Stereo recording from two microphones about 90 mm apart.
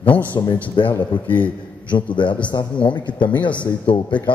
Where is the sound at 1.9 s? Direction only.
60° left (ahead or behind).